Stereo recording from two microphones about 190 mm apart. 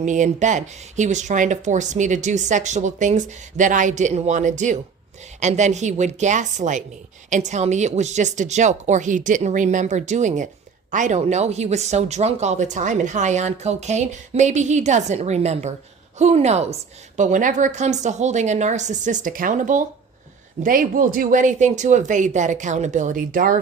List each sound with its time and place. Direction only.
0.0 s speech: 40° right (ahead or behind)